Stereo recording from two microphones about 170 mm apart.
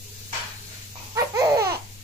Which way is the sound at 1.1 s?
20° right (ahead or behind).